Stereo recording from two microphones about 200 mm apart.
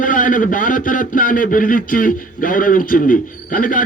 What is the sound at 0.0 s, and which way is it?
A man's voice, 40° left (ahead or behind).